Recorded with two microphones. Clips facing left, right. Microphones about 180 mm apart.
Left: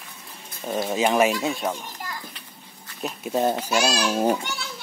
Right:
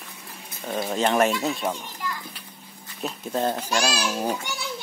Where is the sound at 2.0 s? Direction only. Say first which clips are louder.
Right 6 dB; 45° left (ahead or behind).